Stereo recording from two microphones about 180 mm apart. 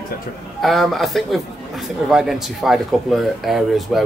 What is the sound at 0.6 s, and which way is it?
Speech, centre (ahead or behind).